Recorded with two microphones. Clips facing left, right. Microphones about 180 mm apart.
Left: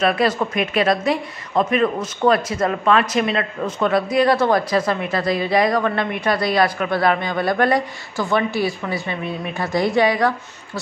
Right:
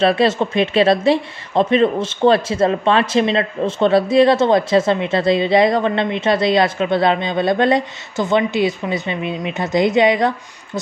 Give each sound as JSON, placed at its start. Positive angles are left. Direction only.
{"t": 0.0, "sound": "a woman's voice", "side_deg": -30}